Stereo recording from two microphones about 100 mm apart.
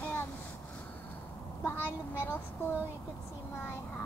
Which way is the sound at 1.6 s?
25° left (ahead or behind).